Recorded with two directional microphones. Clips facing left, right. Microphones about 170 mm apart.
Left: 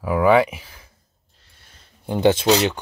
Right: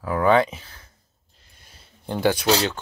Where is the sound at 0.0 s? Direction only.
10° left (ahead or behind).